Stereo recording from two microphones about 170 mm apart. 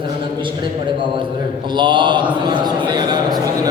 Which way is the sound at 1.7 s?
25° right (ahead or behind).